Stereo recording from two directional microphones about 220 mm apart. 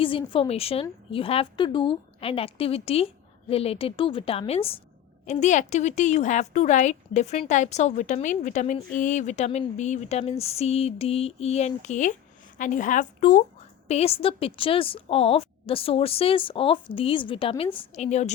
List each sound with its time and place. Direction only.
0.0 s a woman's voice: 25° left (ahead or behind)